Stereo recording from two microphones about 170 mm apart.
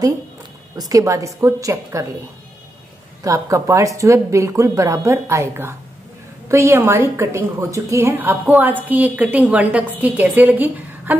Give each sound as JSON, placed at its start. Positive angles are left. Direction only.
{"t": 0.7, "sound": "a woman's voice", "side_deg": -20}
{"t": 3.3, "sound": "a woman's voice", "side_deg": -20}